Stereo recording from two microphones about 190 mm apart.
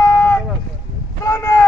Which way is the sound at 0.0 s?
15° left (ahead or behind).